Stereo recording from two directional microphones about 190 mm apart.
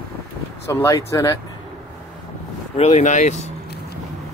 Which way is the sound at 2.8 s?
35° left (ahead or behind).